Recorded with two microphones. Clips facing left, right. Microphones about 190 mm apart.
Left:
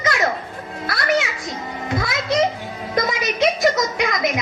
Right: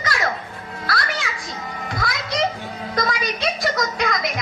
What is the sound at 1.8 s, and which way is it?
Music, 20° left (ahead or behind).